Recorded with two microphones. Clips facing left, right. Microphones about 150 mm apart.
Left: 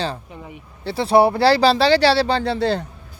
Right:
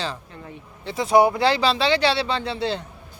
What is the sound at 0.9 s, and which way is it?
Speech, 30° left (ahead or behind).